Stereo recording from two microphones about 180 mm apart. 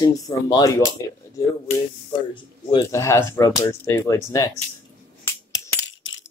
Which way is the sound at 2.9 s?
15° left (ahead or behind).